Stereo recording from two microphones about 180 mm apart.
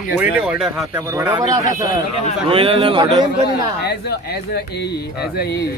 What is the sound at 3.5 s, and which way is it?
Speech, 60° left (ahead or behind).